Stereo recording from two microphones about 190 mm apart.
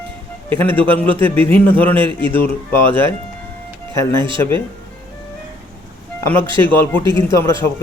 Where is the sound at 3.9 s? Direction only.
15° left (ahead or behind).